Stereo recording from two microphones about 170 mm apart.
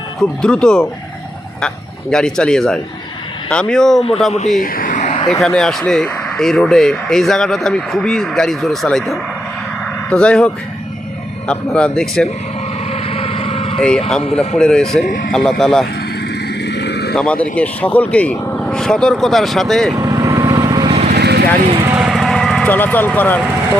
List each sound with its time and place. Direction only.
0.2 s speech: 5° left (ahead or behind)
4.6 s a sound: 55° left (ahead or behind)
5.4 s speech: 5° left (ahead or behind)
12.9 s vehicle: 35° left (ahead or behind)
14.3 s speech: 5° left (ahead or behind)
15.0 s speech: 55° left (ahead or behind)
15.3 s speech: centre (ahead or behind)
16.6 s vehicle: 80° left
17.2 s speech: 5° left (ahead or behind)
19.9 s vehicle: 20° right (ahead or behind)
21.1 s vehicle: 75° right (ahead or behind)
21.8 s vehicle: 5° right (ahead or behind)